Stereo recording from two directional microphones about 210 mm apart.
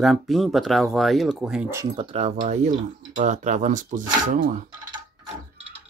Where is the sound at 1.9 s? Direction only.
30° right (ahead or behind).